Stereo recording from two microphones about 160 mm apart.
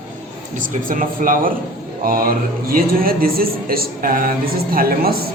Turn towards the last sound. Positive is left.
turn(degrees=-70)  # may be behind; listen again after turning